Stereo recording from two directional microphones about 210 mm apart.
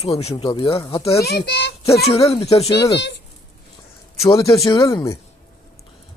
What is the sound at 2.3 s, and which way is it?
Speech, 25° left (ahead or behind).